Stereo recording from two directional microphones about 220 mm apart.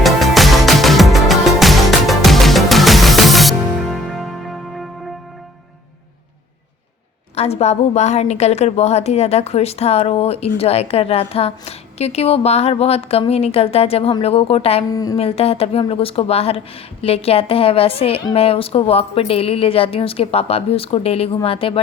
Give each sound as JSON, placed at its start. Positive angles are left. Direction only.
{"t": 0.0, "sound": "music", "side_deg": 0}
{"t": 7.3, "sound": "a woman's voice", "side_deg": 30}